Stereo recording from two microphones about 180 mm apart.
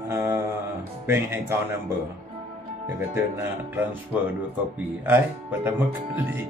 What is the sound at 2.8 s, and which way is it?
Speech, 10° right (ahead or behind).